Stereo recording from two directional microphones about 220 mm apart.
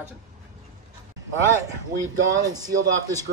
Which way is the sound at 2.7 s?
60° right (ahead or behind).